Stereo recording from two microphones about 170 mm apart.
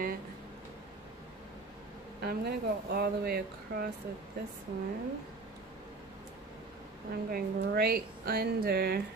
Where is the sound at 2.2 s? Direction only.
70° right (ahead or behind).